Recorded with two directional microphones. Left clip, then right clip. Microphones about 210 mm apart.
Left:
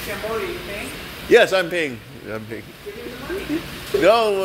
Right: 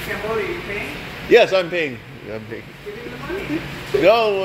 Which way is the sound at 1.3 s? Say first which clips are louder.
Right 1 dB; 20° left (ahead or behind).